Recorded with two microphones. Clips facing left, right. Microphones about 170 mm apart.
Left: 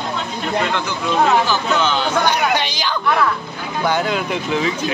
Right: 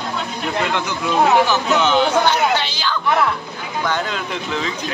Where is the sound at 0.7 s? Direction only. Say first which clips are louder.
Even; 15° right (ahead or behind).